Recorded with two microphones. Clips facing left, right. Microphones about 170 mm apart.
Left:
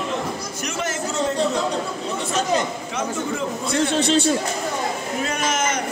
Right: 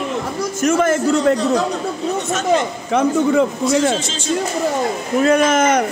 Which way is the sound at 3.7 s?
60° left (ahead or behind).